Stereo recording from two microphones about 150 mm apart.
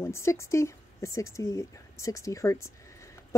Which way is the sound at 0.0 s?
20° left (ahead or behind).